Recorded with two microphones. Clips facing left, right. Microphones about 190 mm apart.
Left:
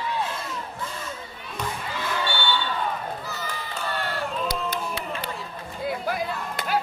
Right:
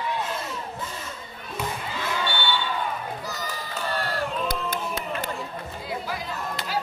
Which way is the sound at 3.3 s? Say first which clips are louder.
Even; 40° right (ahead or behind).